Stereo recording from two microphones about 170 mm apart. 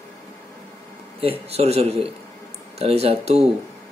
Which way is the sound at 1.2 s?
35° right (ahead or behind).